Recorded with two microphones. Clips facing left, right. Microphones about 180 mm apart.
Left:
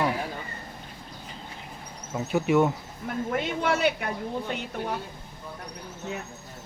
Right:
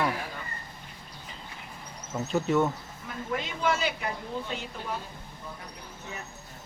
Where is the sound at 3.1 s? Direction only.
60° left (ahead or behind).